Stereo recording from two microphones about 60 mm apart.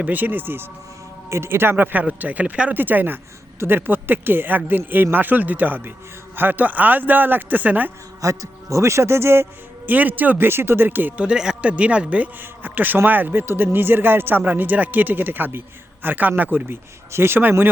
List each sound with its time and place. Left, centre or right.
0.0 s speech: right
8.2 s a man's voice: right
9.9 s speech: right
11.2 s speech: centre; by 13.4 s right
13.4 s speech: right
17.1 s speech: right